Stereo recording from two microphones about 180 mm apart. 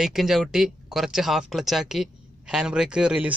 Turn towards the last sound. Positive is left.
turn(degrees=-5)  # may be behind; listen again after turning